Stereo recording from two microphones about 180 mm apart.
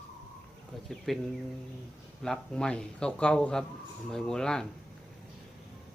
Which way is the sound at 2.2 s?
5° left (ahead or behind).